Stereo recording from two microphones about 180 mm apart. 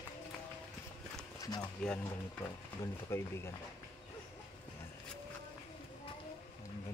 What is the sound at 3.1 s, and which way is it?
Speech, 15° left (ahead or behind).